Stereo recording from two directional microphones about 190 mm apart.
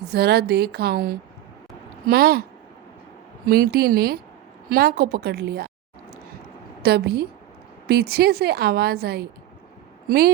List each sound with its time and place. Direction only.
0.0 s a woman's voice: 55° right (ahead or behind)
3.4 s a woman's voice: 50° right (ahead or behind)
6.8 s a woman's voice: 60° right (ahead or behind)